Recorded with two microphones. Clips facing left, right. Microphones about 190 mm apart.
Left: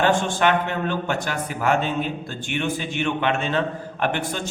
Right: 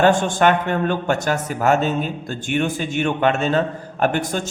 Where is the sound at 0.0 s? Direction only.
45° right (ahead or behind).